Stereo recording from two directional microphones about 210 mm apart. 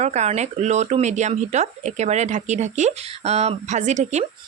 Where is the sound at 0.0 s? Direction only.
35° right (ahead or behind).